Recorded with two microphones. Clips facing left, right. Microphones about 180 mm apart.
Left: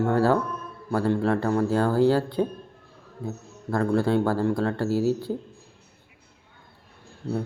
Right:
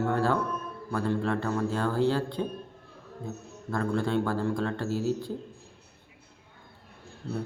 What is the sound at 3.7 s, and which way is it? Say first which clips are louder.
A man's voice: left 6 dB; 35° left (ahead or behind).